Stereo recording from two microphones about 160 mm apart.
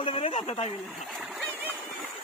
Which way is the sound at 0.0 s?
35° left (ahead or behind).